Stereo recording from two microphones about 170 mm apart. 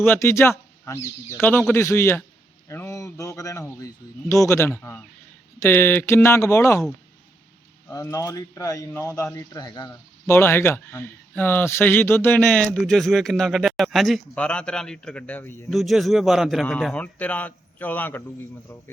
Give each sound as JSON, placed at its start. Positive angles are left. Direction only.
{"t": 0.0, "sound": "a man's voice", "side_deg": 15}
{"t": 2.6, "sound": "a sound", "side_deg": 15}
{"t": 5.5, "sound": "a man's voice", "side_deg": 10}
{"t": 7.9, "sound": "speech", "side_deg": 20}
{"t": 10.3, "sound": "a man's voice", "side_deg": 15}